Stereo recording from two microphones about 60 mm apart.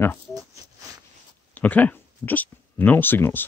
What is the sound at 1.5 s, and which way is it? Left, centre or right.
Speech, left.